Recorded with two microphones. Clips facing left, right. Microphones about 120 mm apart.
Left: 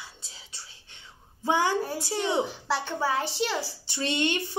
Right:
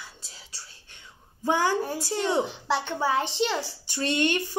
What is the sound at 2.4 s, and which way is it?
A child's voice, 5° left (ahead or behind).